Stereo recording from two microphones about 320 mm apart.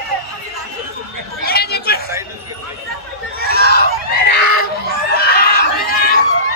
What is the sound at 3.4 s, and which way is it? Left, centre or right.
Chatter, left.